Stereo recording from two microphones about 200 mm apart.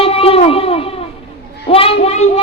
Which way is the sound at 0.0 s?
30° left (ahead or behind).